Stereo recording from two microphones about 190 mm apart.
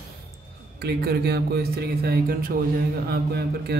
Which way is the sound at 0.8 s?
60° right (ahead or behind).